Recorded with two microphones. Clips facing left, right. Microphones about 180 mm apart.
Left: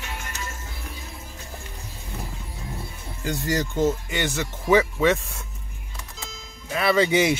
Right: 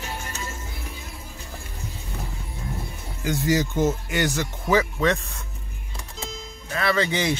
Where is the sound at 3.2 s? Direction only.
5° right (ahead or behind).